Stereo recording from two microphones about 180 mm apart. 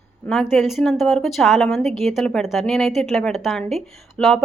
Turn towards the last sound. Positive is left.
turn(degrees=5)  # may be behind; listen again after turning